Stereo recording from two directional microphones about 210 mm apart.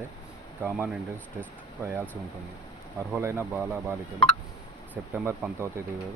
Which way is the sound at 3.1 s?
10° right (ahead or behind).